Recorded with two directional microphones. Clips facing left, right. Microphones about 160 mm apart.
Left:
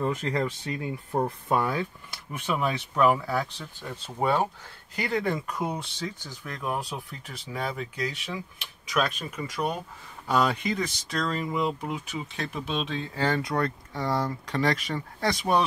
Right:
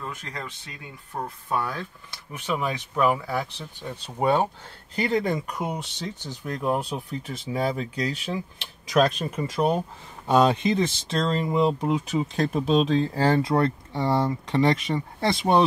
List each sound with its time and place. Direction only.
0.1 s speech: 35° left (ahead or behind)
1.2 s speech: 20° left (ahead or behind)
2.5 s speech: centre (ahead or behind)
4.2 s speech: 20° right (ahead or behind)